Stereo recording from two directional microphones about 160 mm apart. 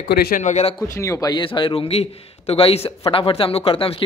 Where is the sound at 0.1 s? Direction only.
80° left.